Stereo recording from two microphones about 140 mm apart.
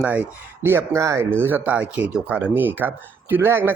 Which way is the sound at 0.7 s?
20° right (ahead or behind).